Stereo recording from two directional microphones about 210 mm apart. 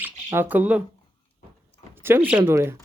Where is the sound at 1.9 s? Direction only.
10° right (ahead or behind).